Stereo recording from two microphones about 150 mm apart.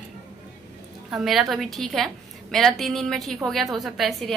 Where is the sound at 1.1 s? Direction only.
Centre (ahead or behind).